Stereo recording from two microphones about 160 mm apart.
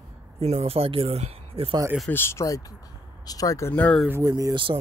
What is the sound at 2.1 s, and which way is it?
Speech, 15° left (ahead or behind).